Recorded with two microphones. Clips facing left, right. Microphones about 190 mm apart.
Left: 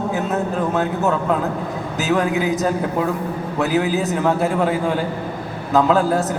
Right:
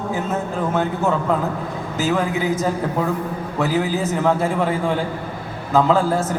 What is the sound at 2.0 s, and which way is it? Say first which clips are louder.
A man's voice: left 2 dB; centre (ahead or behind).